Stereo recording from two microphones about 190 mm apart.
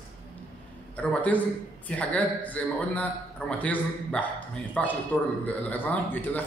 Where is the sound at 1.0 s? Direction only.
5° left (ahead or behind).